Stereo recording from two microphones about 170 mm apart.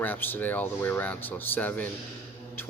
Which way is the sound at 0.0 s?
10° left (ahead or behind).